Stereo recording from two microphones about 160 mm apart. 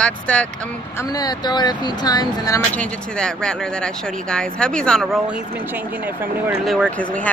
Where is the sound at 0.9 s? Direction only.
25° left (ahead or behind).